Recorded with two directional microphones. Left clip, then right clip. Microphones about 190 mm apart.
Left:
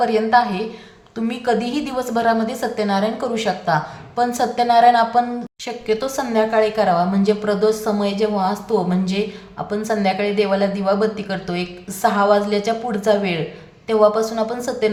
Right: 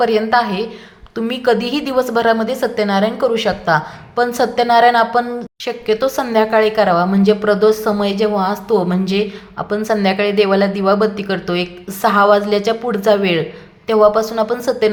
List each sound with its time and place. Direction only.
0.0 s speech: 25° right (ahead or behind)